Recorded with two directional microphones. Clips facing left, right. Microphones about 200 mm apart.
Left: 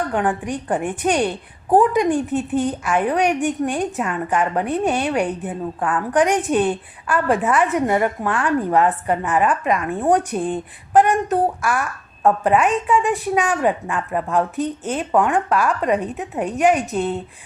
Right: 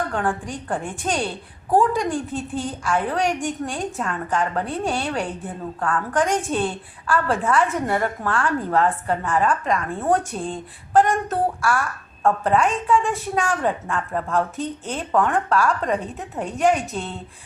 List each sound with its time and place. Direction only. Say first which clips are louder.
0.1 s a woman's voice: left 4 dB; 20° left (ahead or behind)